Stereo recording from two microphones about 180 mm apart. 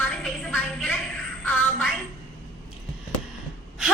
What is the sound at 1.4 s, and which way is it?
Music, 10° left (ahead or behind).